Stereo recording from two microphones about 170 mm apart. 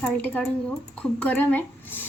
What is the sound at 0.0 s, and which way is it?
A woman's voice, 10° left (ahead or behind).